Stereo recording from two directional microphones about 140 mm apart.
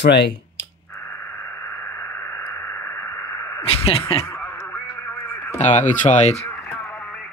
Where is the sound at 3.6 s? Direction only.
45° left (ahead or behind).